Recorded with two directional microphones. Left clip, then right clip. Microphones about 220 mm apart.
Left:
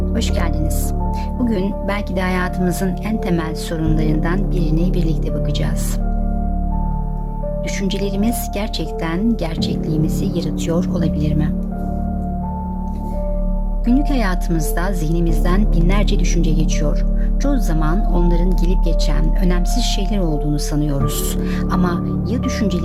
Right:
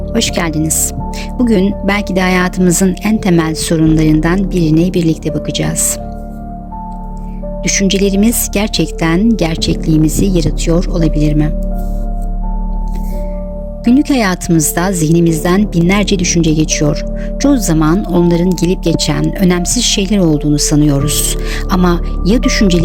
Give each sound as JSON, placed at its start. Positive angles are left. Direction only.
{"t": 0.1, "sound": "speech", "side_deg": -30}
{"t": 7.6, "sound": "speech", "side_deg": -30}
{"t": 13.8, "sound": "speech", "side_deg": -30}